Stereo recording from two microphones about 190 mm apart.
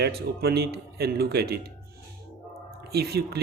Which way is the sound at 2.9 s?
55° right (ahead or behind).